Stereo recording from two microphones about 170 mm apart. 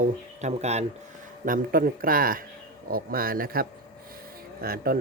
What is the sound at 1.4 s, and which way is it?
Speech, 55° right (ahead or behind).